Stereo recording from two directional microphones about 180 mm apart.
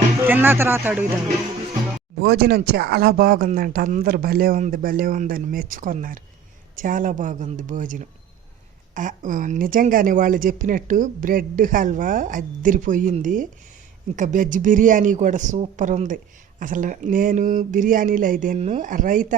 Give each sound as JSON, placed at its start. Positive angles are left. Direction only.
{"t": 0.2, "sound": "speech", "side_deg": -10}
{"t": 2.2, "sound": "speech", "side_deg": -65}